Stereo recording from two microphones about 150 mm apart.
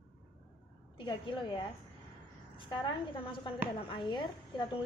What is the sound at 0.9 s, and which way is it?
A woman's voice, 35° left (ahead or behind).